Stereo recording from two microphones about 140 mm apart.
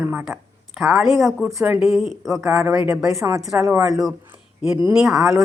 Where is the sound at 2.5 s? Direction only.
15° right (ahead or behind).